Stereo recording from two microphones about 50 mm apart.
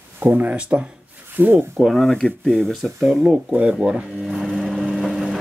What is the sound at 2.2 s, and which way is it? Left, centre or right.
Speech, centre.